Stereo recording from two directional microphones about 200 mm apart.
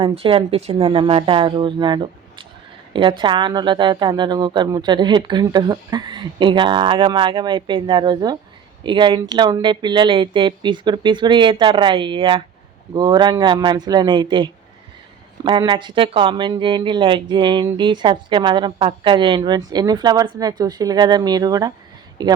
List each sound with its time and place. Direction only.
0.0 s speech: 25° right (ahead or behind)